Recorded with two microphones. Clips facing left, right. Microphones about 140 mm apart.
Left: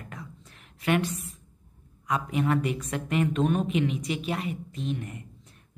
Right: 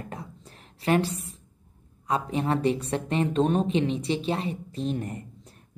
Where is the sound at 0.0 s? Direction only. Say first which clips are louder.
Right 4 dB; 30° right (ahead or behind).